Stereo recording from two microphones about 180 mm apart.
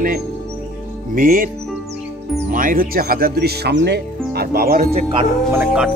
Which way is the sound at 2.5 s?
50° right (ahead or behind).